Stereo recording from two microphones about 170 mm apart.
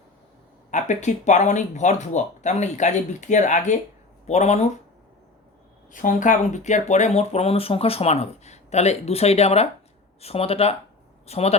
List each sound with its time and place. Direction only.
0.7 s speech: 45° left (ahead or behind)
5.9 s speech: 50° left (ahead or behind)